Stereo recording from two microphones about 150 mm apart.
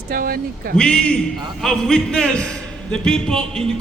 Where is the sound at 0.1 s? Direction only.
75° right (ahead or behind).